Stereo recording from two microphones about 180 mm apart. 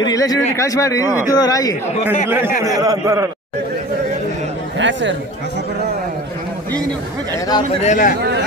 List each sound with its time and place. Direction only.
0.0 s a man's voice: 20° left (ahead or behind)
2.2 s a man's voice: 10° right (ahead or behind)
4.7 s speech: 90° right
7.8 s a man's voice: 45° left (ahead or behind)